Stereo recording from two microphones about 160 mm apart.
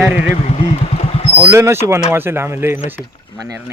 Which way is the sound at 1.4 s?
15° right (ahead or behind).